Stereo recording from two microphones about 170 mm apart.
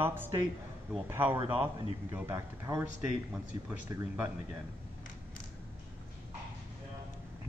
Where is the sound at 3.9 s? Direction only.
20° right (ahead or behind).